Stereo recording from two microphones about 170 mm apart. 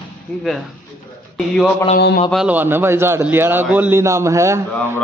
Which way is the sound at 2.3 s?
10° right (ahead or behind).